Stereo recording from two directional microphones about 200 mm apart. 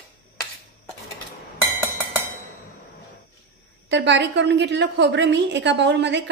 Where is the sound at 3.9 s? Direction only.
60° right (ahead or behind).